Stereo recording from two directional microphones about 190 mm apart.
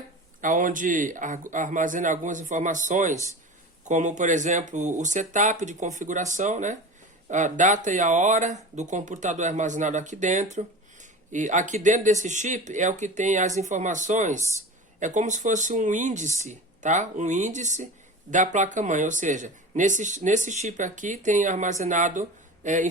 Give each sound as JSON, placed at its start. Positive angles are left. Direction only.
{"t": 0.4, "sound": "speech", "side_deg": -45}